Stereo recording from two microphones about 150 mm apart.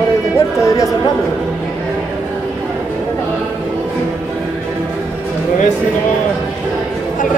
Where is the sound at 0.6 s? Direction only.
20° left (ahead or behind).